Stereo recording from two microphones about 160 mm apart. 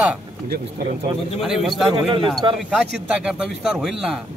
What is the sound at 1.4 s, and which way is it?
Speech, centre (ahead or behind).